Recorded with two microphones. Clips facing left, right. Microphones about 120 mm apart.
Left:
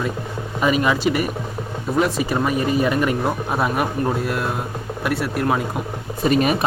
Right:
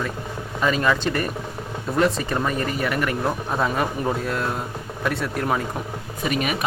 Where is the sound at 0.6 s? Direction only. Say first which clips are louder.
Left 3 dB; 15° left (ahead or behind).